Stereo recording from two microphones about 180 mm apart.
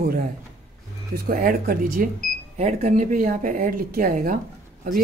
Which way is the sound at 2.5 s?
40° right (ahead or behind).